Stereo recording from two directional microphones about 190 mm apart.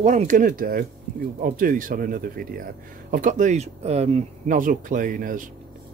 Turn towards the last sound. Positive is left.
turn(degrees=-45)  # may be behind; listen again after turning